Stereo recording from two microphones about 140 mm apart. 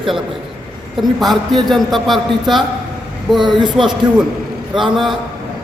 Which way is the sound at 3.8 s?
5° right (ahead or behind).